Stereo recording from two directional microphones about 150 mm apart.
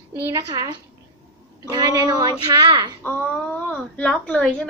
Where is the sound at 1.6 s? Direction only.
25° right (ahead or behind).